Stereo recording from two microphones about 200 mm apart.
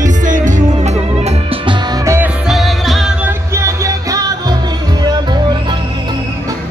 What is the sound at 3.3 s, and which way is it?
Music, 15° right (ahead or behind).